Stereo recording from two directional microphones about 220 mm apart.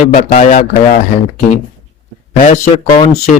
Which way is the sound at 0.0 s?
40° left (ahead or behind).